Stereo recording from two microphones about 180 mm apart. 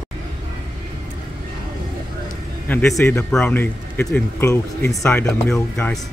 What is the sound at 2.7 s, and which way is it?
Speech, 10° left (ahead or behind).